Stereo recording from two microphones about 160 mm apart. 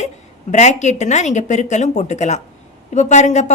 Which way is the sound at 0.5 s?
45° left (ahead or behind).